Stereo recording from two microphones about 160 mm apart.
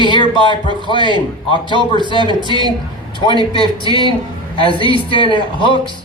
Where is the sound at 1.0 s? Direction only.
30° right (ahead or behind).